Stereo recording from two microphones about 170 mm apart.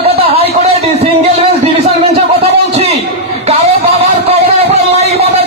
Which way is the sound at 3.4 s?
35° right (ahead or behind).